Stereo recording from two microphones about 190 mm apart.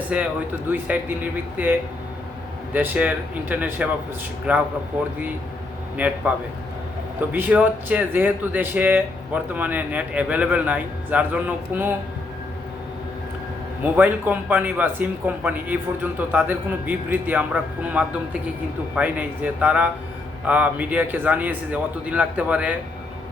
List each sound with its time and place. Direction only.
0.1 s speech: 5° right (ahead or behind)
2.7 s speech: 10° right (ahead or behind)
7.2 s speech: 10° right (ahead or behind)
13.8 s speech: 10° right (ahead or behind)